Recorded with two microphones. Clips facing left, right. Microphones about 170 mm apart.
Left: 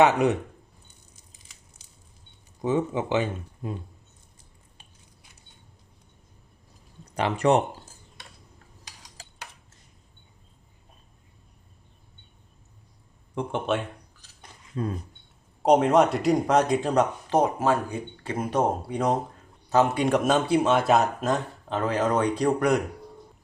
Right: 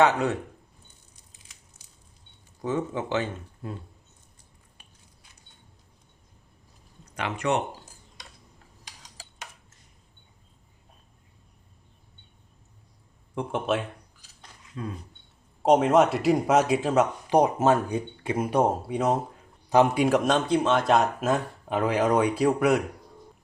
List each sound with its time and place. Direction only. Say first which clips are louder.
0.0 s speech: left 2 dB; 15° left (ahead or behind)
2.6 s speech: left 3 dB; 15° left (ahead or behind)
4.8 s a sound: left 2 dB; 25° left (ahead or behind)
7.0 s speech: left 6 dB; 35° left (ahead or behind)
13.3 s speech: even; centre (ahead or behind)
14.8 s speech: left 5 dB; 40° left (ahead or behind)
15.6 s a man's voice: even; centre (ahead or behind)